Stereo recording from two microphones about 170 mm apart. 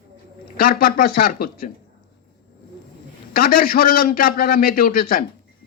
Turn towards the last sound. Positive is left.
turn(degrees=60)  # may be behind; listen again after turning